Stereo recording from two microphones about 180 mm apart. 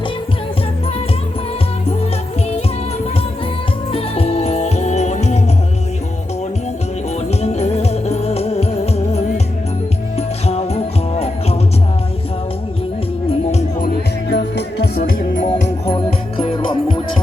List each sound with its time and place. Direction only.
3.9 s music: 35° left (ahead or behind)
7.4 s music: 35° left (ahead or behind)
10.2 s music: 35° left (ahead or behind)
14.3 s music: 70° left (ahead or behind); by 15.4 s 50° left (ahead or behind)
15.9 s music: 30° left (ahead or behind)